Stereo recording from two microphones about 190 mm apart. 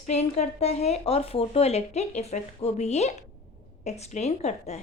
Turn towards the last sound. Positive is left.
turn(degrees=35)  # may be behind; listen again after turning